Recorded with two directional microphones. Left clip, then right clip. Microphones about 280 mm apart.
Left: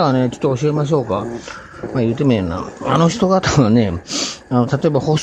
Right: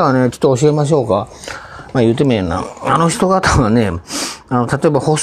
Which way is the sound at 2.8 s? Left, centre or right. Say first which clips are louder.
Right 2 dB; left.